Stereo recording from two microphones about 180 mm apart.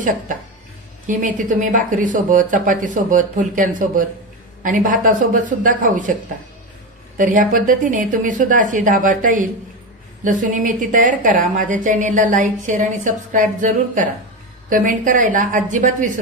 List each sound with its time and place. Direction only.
1.0 s speech: 45° right (ahead or behind)
7.2 s speech: 45° right (ahead or behind)